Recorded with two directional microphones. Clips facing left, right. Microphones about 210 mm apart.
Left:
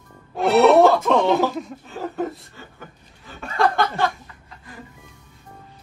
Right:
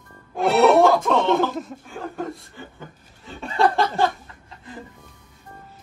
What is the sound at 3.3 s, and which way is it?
Speech, 25° right (ahead or behind).